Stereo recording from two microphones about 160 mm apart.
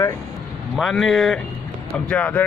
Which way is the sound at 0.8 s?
Centre (ahead or behind).